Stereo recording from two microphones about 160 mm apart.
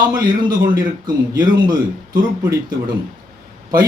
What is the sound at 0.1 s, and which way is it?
Speech, 25° right (ahead or behind).